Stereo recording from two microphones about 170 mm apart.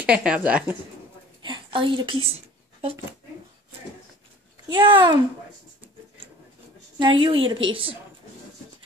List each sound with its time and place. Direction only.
0.0 s a woman's voice: 5° right (ahead or behind)
1.4 s a sound: 30° right (ahead or behind)
4.6 s a child's voice: 25° right (ahead or behind)
7.0 s a woman's voice: 30° right (ahead or behind)